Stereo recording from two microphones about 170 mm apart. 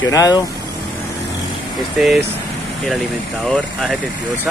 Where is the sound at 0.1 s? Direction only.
20° left (ahead or behind).